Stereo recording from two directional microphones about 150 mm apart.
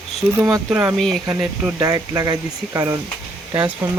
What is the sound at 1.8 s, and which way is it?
Speech, 25° right (ahead or behind).